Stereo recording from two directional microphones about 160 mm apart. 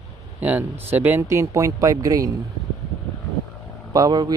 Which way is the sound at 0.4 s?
10° right (ahead or behind).